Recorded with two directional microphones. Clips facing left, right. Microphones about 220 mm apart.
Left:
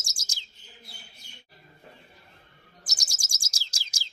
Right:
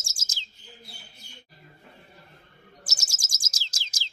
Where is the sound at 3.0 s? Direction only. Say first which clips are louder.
Right 1 dB; 10° left (ahead or behind).